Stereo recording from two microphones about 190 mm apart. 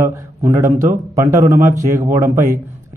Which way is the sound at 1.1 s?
15° right (ahead or behind).